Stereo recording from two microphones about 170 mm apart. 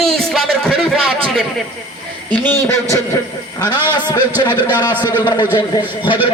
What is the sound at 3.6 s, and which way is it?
A man's voice, 25° left (ahead or behind).